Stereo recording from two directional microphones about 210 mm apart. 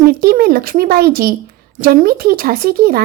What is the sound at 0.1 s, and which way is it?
Speech, 45° right (ahead or behind).